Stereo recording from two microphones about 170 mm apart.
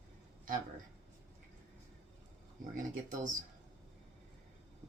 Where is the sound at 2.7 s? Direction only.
50° right (ahead or behind).